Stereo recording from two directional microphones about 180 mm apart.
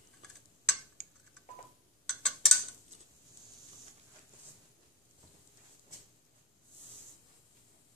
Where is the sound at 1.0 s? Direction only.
40° right (ahead or behind).